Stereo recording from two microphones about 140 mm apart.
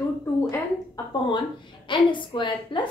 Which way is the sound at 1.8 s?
35° left (ahead or behind).